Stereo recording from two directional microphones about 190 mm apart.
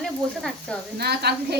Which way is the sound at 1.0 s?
60° right (ahead or behind).